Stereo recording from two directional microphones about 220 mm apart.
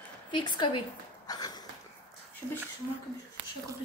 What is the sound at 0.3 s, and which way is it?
A woman's voice, 20° left (ahead or behind).